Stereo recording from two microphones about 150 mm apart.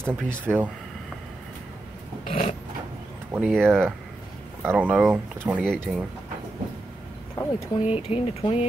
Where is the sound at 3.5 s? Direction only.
5° left (ahead or behind).